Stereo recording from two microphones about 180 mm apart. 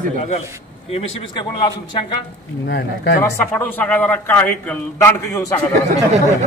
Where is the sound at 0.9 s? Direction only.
35° left (ahead or behind).